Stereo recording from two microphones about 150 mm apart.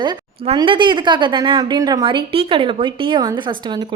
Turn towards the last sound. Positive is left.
turn(degrees=-30)  # may be behind; listen again after turning